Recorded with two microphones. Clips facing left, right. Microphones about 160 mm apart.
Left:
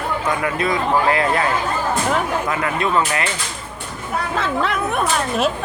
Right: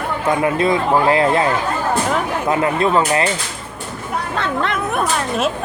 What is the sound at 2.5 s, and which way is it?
Speech, 25° right (ahead or behind).